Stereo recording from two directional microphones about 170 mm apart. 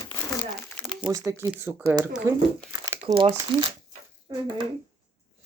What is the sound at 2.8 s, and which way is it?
Crumpling, 25° right (ahead or behind).